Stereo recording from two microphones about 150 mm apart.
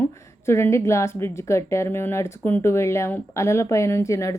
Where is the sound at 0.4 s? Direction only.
20° left (ahead or behind).